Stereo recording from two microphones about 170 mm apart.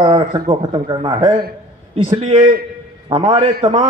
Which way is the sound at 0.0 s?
30° right (ahead or behind).